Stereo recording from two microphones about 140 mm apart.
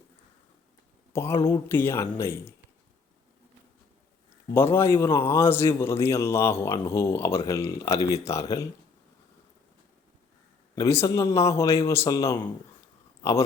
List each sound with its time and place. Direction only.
1.1 s a man's voice: 20° left (ahead or behind)
4.5 s a man's voice: 15° left (ahead or behind)
10.8 s a man's voice: 20° left (ahead or behind)